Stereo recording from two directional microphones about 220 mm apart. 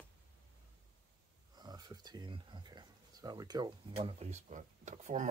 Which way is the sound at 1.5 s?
20° right (ahead or behind).